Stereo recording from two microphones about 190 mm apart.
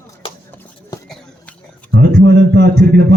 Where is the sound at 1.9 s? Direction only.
55° right (ahead or behind).